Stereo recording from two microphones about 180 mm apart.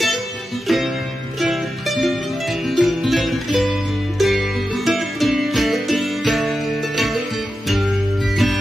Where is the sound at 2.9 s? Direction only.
Centre (ahead or behind).